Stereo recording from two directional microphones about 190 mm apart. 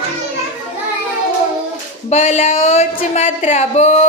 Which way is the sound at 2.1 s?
40° left (ahead or behind).